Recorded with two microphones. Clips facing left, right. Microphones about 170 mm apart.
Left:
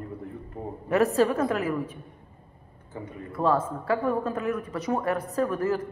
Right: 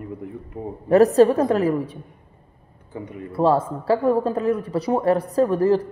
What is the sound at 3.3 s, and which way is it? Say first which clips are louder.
Speech: right 6 dB; 35° right (ahead or behind).